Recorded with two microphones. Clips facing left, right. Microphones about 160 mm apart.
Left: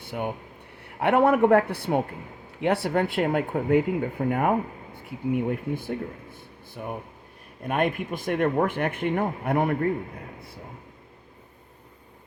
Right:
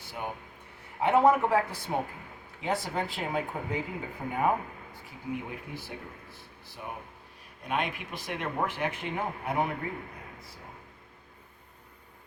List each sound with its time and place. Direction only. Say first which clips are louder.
0.0 s air conditioning: left 7 dB; 60° left (ahead or behind)
0.9 s speech: left 3 dB; 65° left (ahead or behind)
7.6 s speech: left 7 dB; 55° left (ahead or behind)